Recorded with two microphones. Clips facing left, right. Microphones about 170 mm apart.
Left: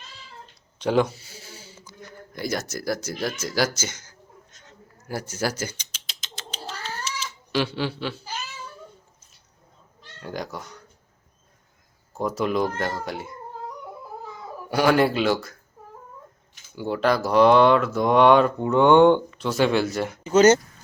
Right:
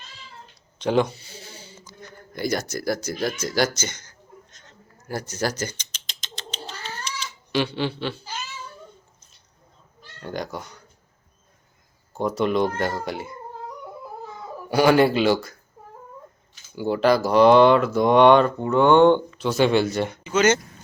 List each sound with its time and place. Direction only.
0.8 s speech: 5° left (ahead or behind)
4.5 s a sound: 10° left (ahead or behind)
10.2 s speech: centre (ahead or behind)
12.1 s speech: centre (ahead or behind)
14.7 s speech: centre (ahead or behind)
16.7 s speech: centre (ahead or behind)
19.4 s speech: centre (ahead or behind)
20.2 s speech: 40° left (ahead or behind)